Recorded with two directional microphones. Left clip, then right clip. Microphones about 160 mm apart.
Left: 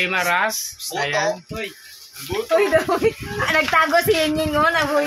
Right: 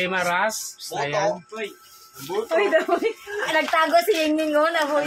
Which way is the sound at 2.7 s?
50° left (ahead or behind).